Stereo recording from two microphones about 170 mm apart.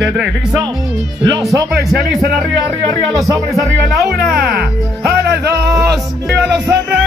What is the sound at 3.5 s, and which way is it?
Speech, centre (ahead or behind).